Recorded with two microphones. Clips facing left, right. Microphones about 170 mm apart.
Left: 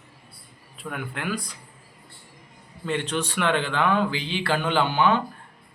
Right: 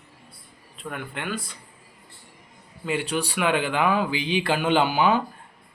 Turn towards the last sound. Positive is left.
turn(degrees=-10)  # may be behind; listen again after turning